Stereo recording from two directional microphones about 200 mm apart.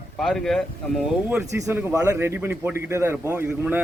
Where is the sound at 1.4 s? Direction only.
15° right (ahead or behind).